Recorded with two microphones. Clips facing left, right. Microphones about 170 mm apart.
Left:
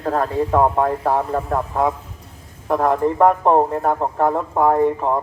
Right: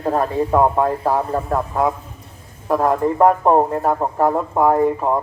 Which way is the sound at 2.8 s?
5° right (ahead or behind).